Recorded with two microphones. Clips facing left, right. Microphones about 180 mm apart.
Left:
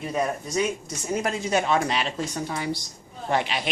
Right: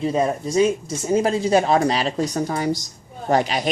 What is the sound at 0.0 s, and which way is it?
Speech, 30° right (ahead or behind).